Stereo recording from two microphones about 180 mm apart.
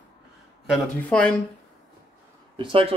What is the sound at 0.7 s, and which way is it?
Speech, 5° left (ahead or behind).